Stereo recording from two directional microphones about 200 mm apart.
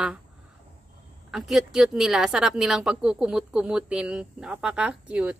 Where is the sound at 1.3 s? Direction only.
Centre (ahead or behind).